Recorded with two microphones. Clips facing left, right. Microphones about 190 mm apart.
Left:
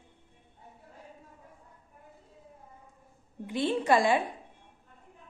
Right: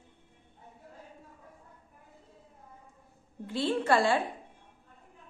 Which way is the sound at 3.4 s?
20° left (ahead or behind).